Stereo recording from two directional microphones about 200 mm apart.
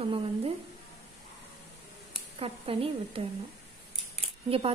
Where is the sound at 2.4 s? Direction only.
30° right (ahead or behind).